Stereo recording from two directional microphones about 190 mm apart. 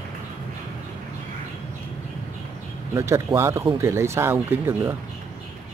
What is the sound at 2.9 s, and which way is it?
Speech, 15° right (ahead or behind).